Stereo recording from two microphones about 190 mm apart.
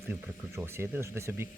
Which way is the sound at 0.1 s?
10° right (ahead or behind).